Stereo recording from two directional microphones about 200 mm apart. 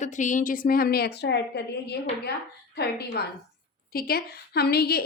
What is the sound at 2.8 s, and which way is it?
A woman's voice, 55° left (ahead or behind).